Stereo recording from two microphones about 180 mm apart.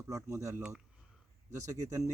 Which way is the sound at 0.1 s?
15° right (ahead or behind).